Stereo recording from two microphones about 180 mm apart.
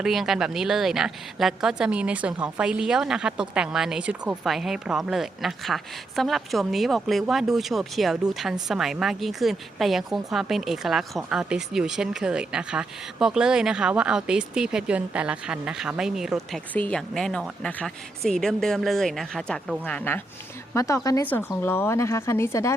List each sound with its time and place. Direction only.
0.0 s a woman's voice: centre (ahead or behind); by 22.7 s 15° left (ahead or behind)